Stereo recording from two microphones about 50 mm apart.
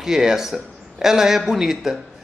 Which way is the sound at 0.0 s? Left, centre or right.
Centre.